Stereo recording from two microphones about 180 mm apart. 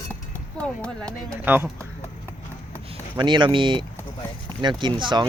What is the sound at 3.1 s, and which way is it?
Speech, 25° right (ahead or behind).